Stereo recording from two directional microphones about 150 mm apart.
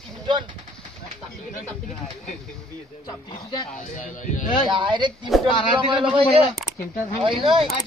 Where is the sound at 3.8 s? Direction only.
55° left (ahead or behind).